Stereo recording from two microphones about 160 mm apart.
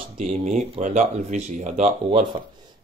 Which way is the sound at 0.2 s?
50° right (ahead or behind).